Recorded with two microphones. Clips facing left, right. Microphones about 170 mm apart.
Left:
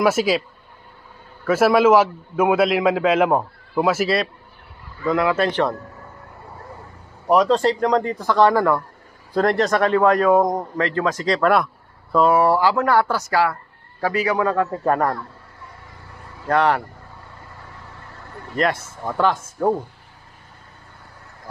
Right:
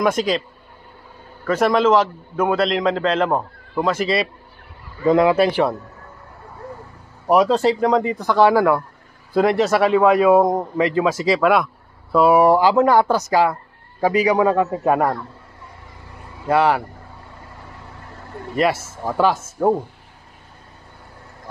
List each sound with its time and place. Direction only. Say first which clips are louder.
0.0 s a man's voice: left 1 dB; 5° left (ahead or behind)
1.4 s a man's voice: left 2 dB; 5° left (ahead or behind)
5.0 s a man's voice: right 5 dB; 20° right (ahead or behind)
5.4 s a man's voice: right 3 dB; 10° right (ahead or behind)
7.2 s a man's voice: right 1 dB; 10° right (ahead or behind)
16.4 s a man's voice: right 2 dB; 5° right (ahead or behind)
18.5 s a man's voice: right 2 dB; 10° right (ahead or behind)